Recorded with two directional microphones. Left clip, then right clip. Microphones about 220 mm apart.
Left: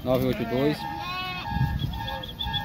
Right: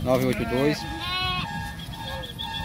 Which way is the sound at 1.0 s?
30° right (ahead or behind).